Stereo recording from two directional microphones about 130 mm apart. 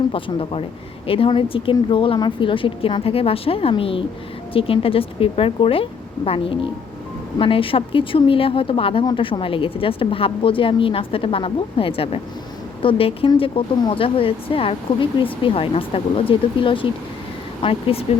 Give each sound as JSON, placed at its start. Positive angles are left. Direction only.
{"t": 0.1, "sound": "speech", "side_deg": 45}